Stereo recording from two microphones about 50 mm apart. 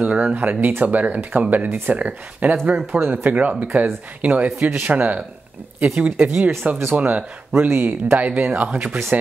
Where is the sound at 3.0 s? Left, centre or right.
Right.